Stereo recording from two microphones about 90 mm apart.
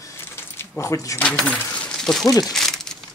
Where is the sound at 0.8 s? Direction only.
35° left (ahead or behind).